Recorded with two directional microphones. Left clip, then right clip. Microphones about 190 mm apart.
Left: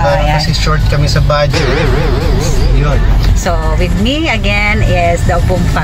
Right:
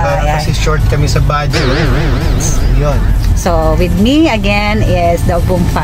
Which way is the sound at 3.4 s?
25° right (ahead or behind).